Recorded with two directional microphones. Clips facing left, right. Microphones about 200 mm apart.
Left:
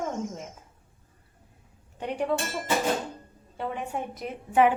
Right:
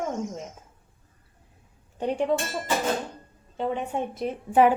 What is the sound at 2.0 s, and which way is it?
Speech, 30° right (ahead or behind).